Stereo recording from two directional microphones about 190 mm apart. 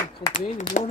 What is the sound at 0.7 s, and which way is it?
Speech, 40° left (ahead or behind).